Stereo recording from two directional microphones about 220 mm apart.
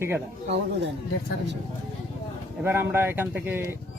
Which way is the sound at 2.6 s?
10° right (ahead or behind).